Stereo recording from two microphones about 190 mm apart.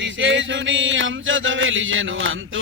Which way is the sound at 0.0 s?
75° right (ahead or behind).